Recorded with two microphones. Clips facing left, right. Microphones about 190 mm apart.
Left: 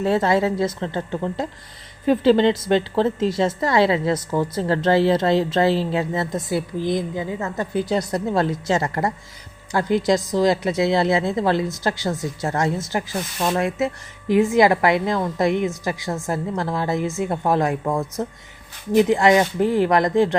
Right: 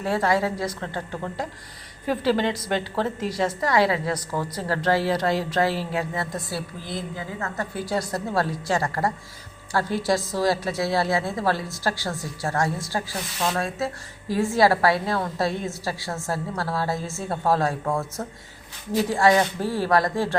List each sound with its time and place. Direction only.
0.0 s a woman's voice: 25° left (ahead or behind)